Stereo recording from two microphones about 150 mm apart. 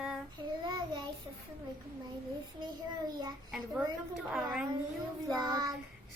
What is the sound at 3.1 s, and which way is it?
Child singing, 25° right (ahead or behind).